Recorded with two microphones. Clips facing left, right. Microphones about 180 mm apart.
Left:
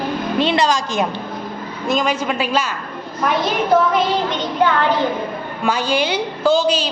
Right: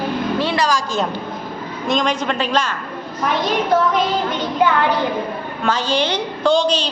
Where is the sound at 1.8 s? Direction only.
5° left (ahead or behind).